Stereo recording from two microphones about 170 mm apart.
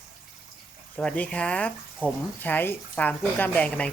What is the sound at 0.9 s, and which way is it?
Speech, 5° left (ahead or behind).